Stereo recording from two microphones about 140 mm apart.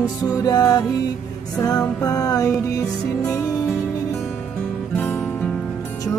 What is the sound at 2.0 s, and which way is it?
Music, 25° left (ahead or behind).